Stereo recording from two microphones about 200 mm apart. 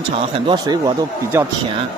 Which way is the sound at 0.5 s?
20° right (ahead or behind).